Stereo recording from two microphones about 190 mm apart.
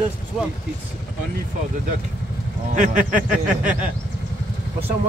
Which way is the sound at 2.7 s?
40° right (ahead or behind).